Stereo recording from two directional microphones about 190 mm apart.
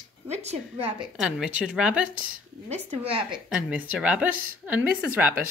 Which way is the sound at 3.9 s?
5° right (ahead or behind).